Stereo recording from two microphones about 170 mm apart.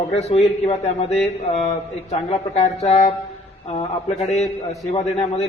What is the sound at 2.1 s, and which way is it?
A man's voice, 40° left (ahead or behind).